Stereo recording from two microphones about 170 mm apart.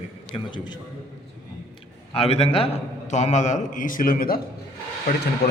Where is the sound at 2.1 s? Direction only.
35° left (ahead or behind); by 4.4 s 60° left (ahead or behind).